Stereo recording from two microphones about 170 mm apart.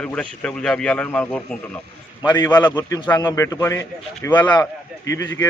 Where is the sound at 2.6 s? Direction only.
25° left (ahead or behind).